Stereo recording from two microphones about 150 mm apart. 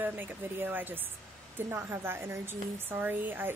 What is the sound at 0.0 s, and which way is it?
Speech, 15° right (ahead or behind).